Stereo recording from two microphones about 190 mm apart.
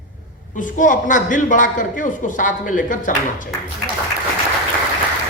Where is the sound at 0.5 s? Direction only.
45° left (ahead or behind).